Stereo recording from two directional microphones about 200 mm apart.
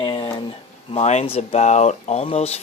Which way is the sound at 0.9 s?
30° left (ahead or behind).